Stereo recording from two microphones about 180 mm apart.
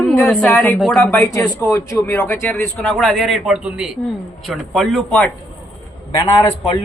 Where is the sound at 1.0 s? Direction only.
15° left (ahead or behind).